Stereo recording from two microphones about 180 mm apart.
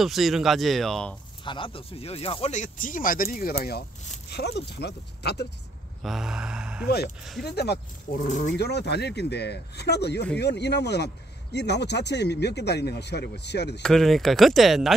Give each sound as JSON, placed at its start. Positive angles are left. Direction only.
{"t": 0.0, "sound": "speech", "side_deg": 0}
{"t": 1.4, "sound": "speech", "side_deg": 25}
{"t": 6.0, "sound": "speech", "side_deg": -5}
{"t": 7.4, "sound": "speech", "side_deg": 65}
{"t": 8.3, "sound": "speech", "side_deg": 40}
{"t": 8.5, "sound": "speech", "side_deg": 65}
{"t": 13.8, "sound": "speech", "side_deg": 0}